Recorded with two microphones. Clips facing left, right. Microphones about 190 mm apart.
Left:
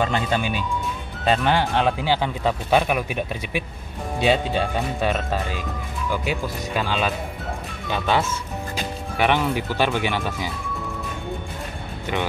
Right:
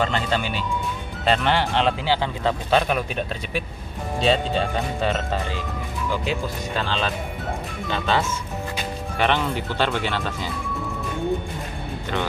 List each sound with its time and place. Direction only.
0.0 s speech: 15° left (ahead or behind)